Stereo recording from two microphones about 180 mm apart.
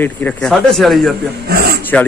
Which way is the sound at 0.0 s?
5° left (ahead or behind).